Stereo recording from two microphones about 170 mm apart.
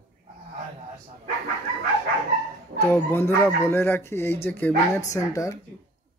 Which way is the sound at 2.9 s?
10° left (ahead or behind).